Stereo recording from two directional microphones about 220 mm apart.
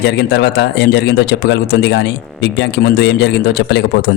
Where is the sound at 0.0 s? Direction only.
50° left (ahead or behind).